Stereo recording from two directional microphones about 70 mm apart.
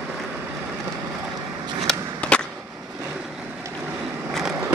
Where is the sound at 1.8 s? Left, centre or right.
Centre.